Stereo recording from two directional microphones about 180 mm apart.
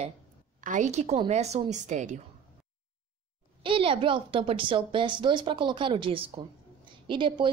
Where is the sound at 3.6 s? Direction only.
30° right (ahead or behind).